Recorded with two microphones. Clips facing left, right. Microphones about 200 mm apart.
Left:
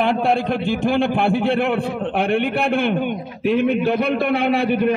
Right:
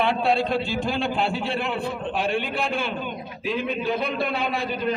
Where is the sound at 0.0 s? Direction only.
50° left (ahead or behind).